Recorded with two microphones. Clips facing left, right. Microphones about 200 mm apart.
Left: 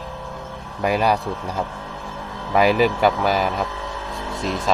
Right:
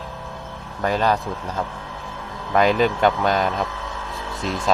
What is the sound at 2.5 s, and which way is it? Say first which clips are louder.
A man's voice: left 1 dB; 5° left (ahead or behind).